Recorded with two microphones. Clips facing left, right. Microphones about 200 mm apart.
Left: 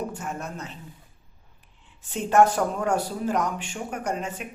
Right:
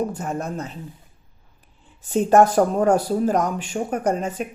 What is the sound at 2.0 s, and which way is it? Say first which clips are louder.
Speech: right 4 dB; 40° right (ahead or behind).